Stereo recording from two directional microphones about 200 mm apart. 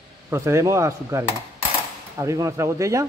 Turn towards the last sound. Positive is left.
turn(degrees=-15)  # may be behind; listen again after turning